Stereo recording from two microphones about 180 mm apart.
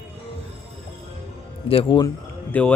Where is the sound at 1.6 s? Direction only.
30° left (ahead or behind).